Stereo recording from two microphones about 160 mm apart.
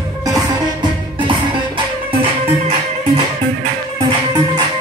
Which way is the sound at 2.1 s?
35° right (ahead or behind).